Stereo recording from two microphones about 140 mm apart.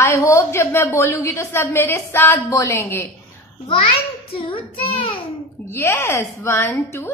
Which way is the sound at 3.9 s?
40° left (ahead or behind).